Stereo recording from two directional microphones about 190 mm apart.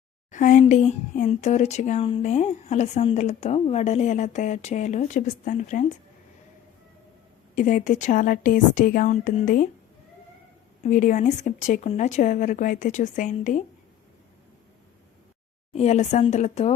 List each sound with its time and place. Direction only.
0.3 s speech: 40° left (ahead or behind)
7.5 s a woman's voice: 45° left (ahead or behind)
10.8 s speech: 40° left (ahead or behind)
15.7 s speech: 35° left (ahead or behind)